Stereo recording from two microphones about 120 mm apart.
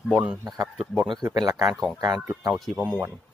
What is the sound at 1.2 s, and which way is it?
Speech, 35° right (ahead or behind).